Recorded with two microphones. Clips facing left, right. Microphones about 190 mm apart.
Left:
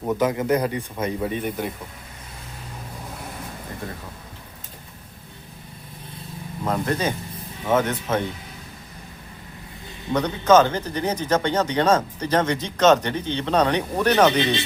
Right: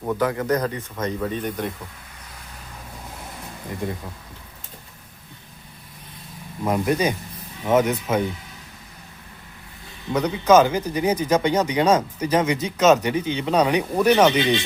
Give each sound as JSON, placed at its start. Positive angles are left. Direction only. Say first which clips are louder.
{"t": 0.0, "sound": "speech", "louder": "left 1 dB", "side_deg": 20}
{"t": 6.7, "sound": "speech", "louder": "right 3 dB", "side_deg": -10}
{"t": 10.1, "sound": "speech", "louder": "even", "side_deg": -10}